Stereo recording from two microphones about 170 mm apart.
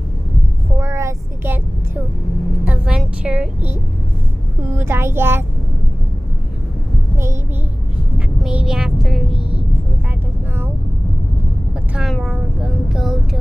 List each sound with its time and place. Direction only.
0.7 s vehicle: 15° right (ahead or behind)
2.6 s music: 5° right (ahead or behind)
4.7 s a child's voice: 15° right (ahead or behind)
8.5 s a sound: 5° right (ahead or behind)
11.9 s a sound: centre (ahead or behind)
12.9 s music: centre (ahead or behind)